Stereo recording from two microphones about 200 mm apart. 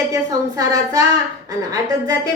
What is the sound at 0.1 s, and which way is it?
A woman's voice, 15° right (ahead or behind).